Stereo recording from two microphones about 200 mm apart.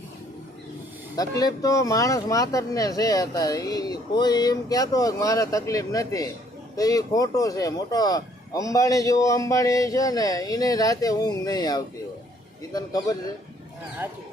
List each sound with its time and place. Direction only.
1.1 s speech: 20° left (ahead or behind)